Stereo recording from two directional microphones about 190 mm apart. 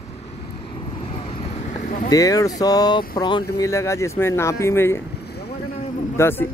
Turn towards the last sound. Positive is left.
turn(degrees=10)  # may be behind; listen again after turning